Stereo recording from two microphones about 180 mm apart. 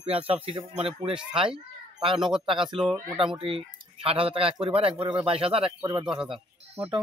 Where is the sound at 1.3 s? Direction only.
30° right (ahead or behind).